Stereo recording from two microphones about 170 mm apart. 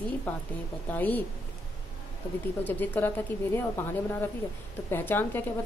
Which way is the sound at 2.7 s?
10° left (ahead or behind).